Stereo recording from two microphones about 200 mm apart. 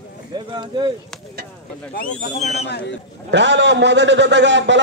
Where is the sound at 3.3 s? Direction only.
60° right (ahead or behind).